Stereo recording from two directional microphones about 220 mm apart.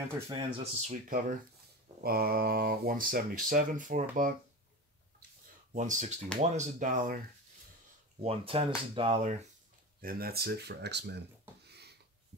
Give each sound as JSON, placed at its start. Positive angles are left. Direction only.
{"t": 0.3, "sound": "speech", "side_deg": -25}
{"t": 2.0, "sound": "speech", "side_deg": -45}
{"t": 5.7, "sound": "speech", "side_deg": -35}
{"t": 8.2, "sound": "speech", "side_deg": -25}
{"t": 10.0, "sound": "speech", "side_deg": -45}
{"t": 11.6, "sound": "a sound", "side_deg": -50}